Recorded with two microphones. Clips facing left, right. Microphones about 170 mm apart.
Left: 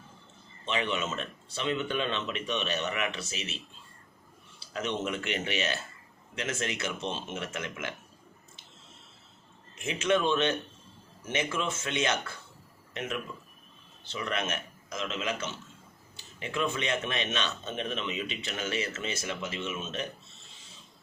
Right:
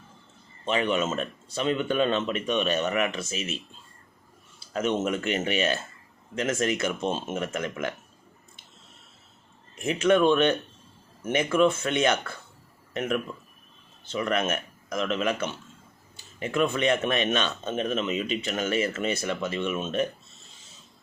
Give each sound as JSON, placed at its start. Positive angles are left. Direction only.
{"t": 0.6, "sound": "speech", "side_deg": -45}
{"t": 4.7, "sound": "speech", "side_deg": -45}
{"t": 9.8, "sound": "a man's voice", "side_deg": -55}